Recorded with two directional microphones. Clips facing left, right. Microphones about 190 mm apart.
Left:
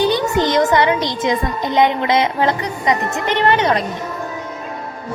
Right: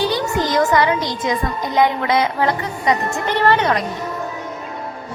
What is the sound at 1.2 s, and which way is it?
Music, 25° left (ahead or behind).